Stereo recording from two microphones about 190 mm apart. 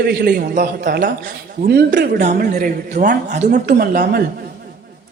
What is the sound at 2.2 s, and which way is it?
Speech, 45° right (ahead or behind).